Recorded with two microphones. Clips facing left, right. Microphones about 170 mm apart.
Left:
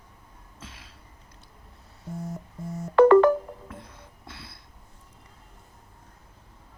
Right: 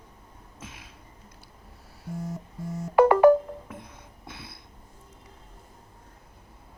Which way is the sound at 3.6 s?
15° right (ahead or behind).